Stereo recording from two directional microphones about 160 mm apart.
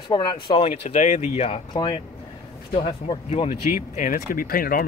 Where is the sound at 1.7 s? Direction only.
25° left (ahead or behind).